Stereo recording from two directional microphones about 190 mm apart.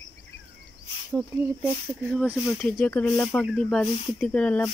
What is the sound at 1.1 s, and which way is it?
Speech, 10° right (ahead or behind).